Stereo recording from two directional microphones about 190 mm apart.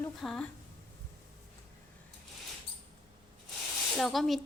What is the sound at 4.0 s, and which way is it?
Speech, centre (ahead or behind).